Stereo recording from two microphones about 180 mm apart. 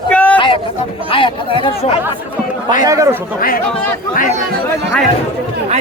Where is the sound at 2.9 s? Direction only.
15° right (ahead or behind).